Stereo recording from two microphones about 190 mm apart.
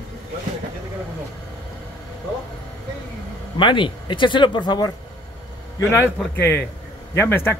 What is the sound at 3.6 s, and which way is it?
Speech, 25° left (ahead or behind).